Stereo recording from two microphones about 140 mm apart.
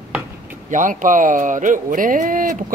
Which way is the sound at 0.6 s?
65° right (ahead or behind).